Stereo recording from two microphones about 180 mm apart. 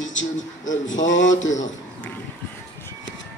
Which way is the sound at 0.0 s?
90° left.